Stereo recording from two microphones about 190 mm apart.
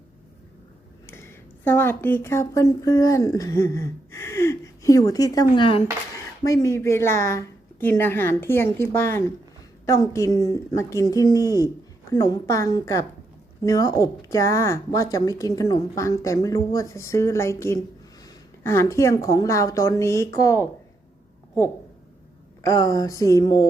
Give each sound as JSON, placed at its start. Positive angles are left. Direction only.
{"t": 1.0, "sound": "a woman's voice", "side_deg": 15}
{"t": 22.6, "sound": "a woman's voice", "side_deg": 20}